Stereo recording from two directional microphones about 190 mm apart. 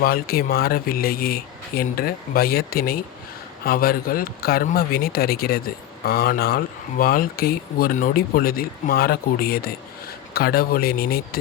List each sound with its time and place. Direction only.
0.0 s speech: 50° left (ahead or behind)